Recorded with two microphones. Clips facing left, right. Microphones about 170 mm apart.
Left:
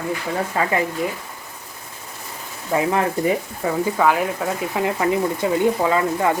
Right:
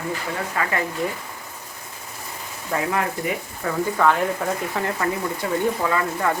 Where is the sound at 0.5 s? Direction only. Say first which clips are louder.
Left 4 dB; 25° left (ahead or behind).